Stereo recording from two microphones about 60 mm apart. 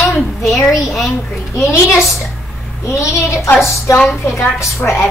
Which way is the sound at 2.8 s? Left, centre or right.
Left.